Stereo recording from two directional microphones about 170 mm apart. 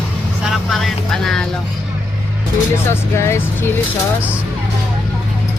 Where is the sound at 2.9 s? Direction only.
15° left (ahead or behind).